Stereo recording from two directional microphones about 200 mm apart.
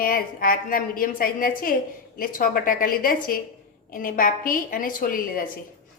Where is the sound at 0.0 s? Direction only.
45° left (ahead or behind).